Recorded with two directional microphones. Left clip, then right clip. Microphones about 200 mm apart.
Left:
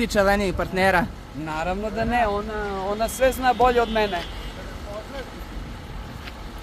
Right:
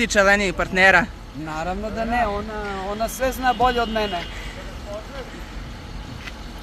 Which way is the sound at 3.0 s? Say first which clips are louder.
Left 3 dB; 30° left (ahead or behind).